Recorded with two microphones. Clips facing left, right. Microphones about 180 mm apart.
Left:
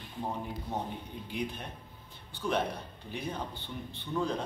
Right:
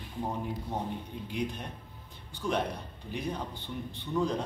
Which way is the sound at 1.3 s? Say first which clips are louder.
Right 2 dB; centre (ahead or behind).